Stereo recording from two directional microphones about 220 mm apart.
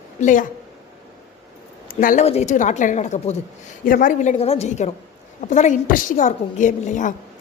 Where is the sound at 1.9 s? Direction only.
40° left (ahead or behind).